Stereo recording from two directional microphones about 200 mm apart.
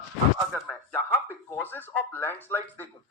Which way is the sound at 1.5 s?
10° left (ahead or behind).